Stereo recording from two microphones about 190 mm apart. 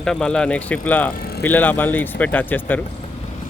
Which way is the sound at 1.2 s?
55° left (ahead or behind).